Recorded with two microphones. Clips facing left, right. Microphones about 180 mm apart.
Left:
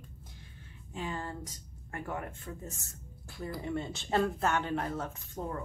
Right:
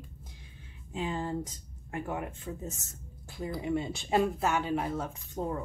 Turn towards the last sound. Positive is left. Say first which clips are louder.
# right 4 dB
turn(degrees=-15)  # may be behind; listen again after turning